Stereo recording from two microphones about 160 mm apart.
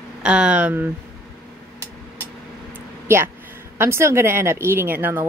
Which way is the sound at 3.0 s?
15° right (ahead or behind).